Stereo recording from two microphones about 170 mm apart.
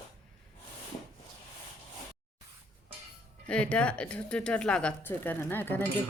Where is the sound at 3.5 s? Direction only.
5° left (ahead or behind).